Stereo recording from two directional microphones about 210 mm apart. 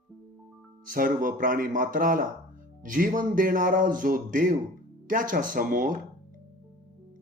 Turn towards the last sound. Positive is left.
turn(degrees=-40)  # may be behind; listen again after turning